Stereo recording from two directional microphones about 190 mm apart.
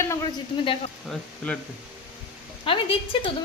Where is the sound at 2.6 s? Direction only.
30° left (ahead or behind).